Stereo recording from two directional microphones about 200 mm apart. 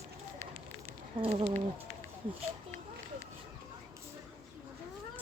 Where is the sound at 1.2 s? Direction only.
25° right (ahead or behind).